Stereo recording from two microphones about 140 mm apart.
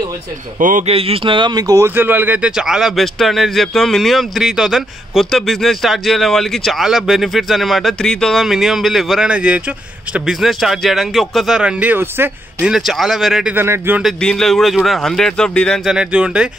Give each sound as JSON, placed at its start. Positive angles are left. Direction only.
{"t": 0.6, "sound": "speech", "side_deg": -75}
{"t": 0.8, "sound": "speech", "side_deg": -45}
{"t": 12.7, "sound": "speech", "side_deg": 0}
{"t": 13.6, "sound": "speech", "side_deg": -15}
{"t": 14.0, "sound": "speech", "side_deg": 5}